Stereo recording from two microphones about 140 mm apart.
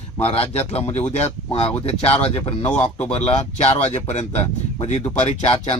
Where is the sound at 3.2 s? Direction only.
50° left (ahead or behind).